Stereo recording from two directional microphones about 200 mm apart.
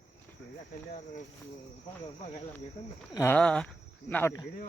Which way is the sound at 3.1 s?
10° left (ahead or behind).